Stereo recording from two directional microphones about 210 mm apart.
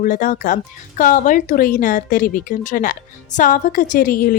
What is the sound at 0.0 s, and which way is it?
Speech, 40° left (ahead or behind).